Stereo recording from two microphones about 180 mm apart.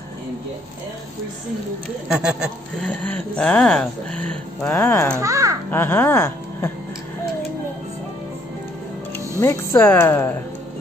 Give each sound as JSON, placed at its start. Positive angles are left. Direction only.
{"t": 2.0, "sound": "a sound", "side_deg": -5}
{"t": 2.9, "sound": "speech", "side_deg": 10}
{"t": 5.1, "sound": "a child's voice", "side_deg": -15}
{"t": 5.7, "sound": "speech", "side_deg": 15}
{"t": 9.4, "sound": "speech", "side_deg": 15}